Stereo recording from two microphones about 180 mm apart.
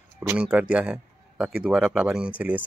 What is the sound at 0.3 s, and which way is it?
A man's voice, 5° right (ahead or behind).